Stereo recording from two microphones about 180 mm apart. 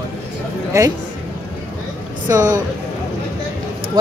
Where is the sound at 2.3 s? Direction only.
15° right (ahead or behind).